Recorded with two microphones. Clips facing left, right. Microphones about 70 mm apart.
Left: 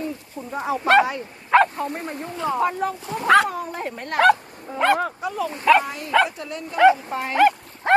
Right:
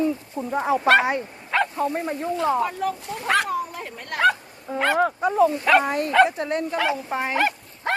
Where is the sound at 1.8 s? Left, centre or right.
Right.